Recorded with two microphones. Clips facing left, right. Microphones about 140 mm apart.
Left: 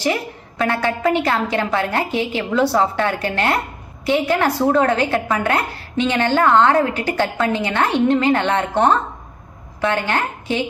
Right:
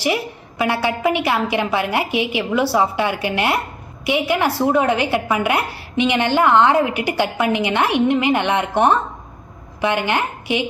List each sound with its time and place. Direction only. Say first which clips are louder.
0.6 s a woman's voice: even; 10° right (ahead or behind)